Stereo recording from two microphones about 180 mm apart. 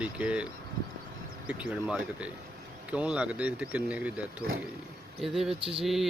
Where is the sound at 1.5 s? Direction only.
5° right (ahead or behind).